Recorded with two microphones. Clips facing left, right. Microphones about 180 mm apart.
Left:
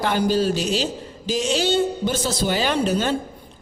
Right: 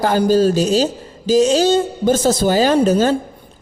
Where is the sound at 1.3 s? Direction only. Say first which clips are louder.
Right 9 dB; 40° right (ahead or behind).